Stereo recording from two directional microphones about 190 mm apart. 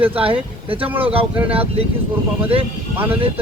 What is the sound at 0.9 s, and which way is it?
Speech, 10° right (ahead or behind).